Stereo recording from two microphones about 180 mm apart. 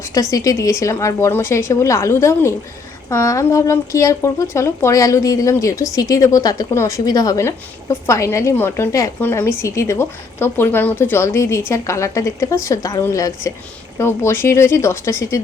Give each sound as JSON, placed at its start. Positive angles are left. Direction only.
{"t": 0.1, "sound": "speech", "side_deg": 20}